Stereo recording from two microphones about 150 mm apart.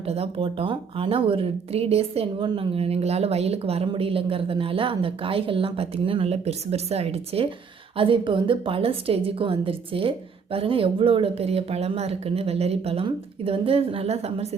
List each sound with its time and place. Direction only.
0.0 s speech: 40° right (ahead or behind)